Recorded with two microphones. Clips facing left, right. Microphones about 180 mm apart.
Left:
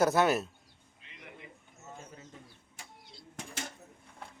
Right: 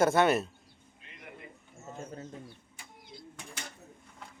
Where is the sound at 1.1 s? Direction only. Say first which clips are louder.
Right 2 dB; 50° right (ahead or behind).